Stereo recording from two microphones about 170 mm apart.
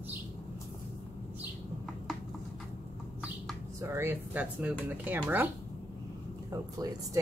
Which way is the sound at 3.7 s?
15° right (ahead or behind).